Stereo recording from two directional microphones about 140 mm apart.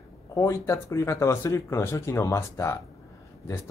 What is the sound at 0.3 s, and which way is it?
Speech, 20° left (ahead or behind).